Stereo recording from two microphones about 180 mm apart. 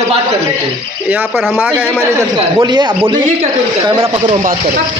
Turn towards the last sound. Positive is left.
turn(degrees=-20)  # may be behind; listen again after turning